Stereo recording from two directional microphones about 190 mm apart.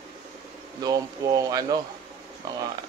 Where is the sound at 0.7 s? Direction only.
20° right (ahead or behind).